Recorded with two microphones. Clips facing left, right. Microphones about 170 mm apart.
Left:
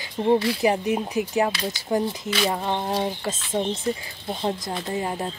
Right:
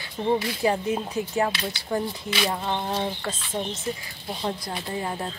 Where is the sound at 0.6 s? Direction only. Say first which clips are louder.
Left 2 dB; 15° left (ahead or behind).